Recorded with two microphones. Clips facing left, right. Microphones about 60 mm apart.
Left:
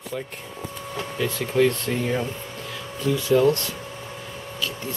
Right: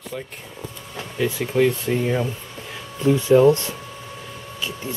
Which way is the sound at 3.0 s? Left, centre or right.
Right.